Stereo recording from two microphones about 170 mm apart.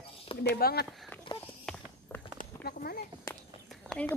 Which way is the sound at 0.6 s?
65° left (ahead or behind).